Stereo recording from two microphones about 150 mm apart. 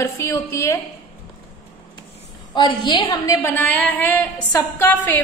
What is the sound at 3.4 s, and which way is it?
A woman's voice, 15° left (ahead or behind).